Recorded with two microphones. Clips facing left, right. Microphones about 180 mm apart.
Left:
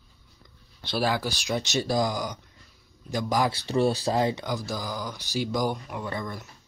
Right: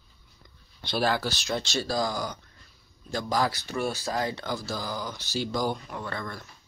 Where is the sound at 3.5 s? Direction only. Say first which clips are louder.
Left 6 dB; 30° left (ahead or behind).